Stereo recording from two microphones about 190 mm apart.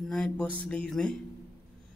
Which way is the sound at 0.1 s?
5° left (ahead or behind).